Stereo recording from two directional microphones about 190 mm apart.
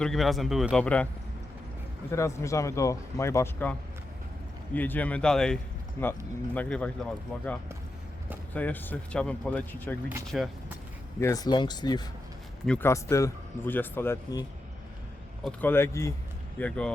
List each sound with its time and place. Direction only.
0.0 s a man's voice: centre (ahead or behind)
2.0 s a man's voice: 15° left (ahead or behind); by 10.5 s centre (ahead or behind)
11.2 s speech: 15° left (ahead or behind)
12.6 s speech: 10° left (ahead or behind)
15.6 s a man's voice: 15° left (ahead or behind)